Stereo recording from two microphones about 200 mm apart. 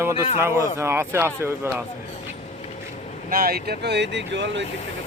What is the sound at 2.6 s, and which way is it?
Vehicle, 35° left (ahead or behind).